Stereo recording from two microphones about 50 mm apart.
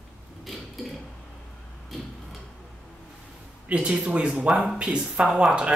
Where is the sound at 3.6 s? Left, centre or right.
Right.